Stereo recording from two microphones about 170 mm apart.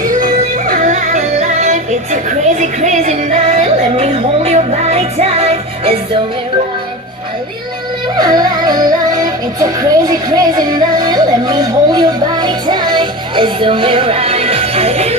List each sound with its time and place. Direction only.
0.1 s music: 55° right (ahead or behind); by 5.9 s 35° right (ahead or behind)
8.2 s music: 25° right (ahead or behind)